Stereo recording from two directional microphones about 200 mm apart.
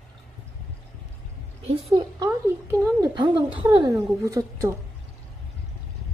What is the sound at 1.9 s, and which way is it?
Speech, 25° right (ahead or behind).